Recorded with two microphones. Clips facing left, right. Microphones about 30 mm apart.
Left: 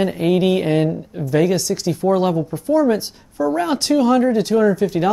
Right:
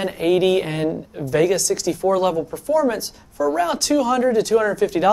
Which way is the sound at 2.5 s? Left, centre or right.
Left.